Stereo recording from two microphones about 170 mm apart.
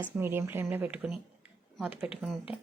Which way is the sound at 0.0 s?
15° right (ahead or behind).